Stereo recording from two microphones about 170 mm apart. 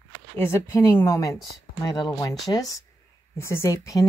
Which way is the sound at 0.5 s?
15° left (ahead or behind).